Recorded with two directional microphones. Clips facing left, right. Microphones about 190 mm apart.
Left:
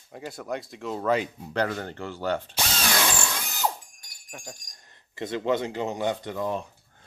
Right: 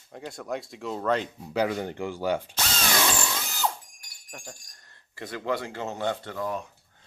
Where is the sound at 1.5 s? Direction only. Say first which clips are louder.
Right 2 dB; 10° right (ahead or behind).